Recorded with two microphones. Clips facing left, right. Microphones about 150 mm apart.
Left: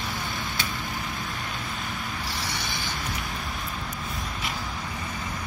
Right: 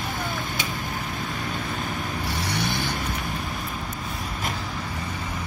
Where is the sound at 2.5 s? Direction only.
60° right (ahead or behind).